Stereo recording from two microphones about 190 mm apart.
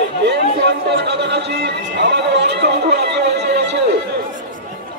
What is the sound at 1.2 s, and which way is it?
Speech, 60° right (ahead or behind).